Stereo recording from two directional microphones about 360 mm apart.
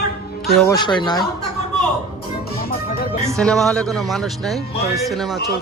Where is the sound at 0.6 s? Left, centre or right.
Centre.